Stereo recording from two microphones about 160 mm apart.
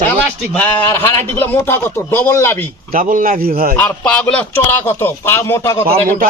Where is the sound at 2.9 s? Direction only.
60° right (ahead or behind).